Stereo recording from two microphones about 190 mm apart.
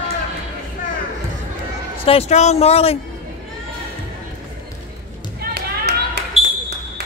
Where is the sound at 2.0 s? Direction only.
30° left (ahead or behind).